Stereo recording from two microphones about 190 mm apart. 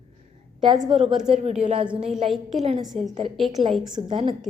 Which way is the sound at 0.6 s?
25° right (ahead or behind).